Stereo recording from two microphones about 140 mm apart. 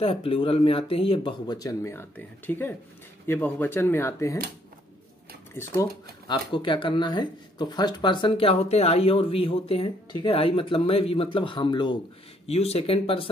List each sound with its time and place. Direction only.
0.0 s speech: 45° left (ahead or behind)
1.5 s speech: 25° left (ahead or behind)
5.5 s speech: 20° left (ahead or behind)
6.2 s speech: 35° left (ahead or behind)
12.4 s speech: 45° left (ahead or behind)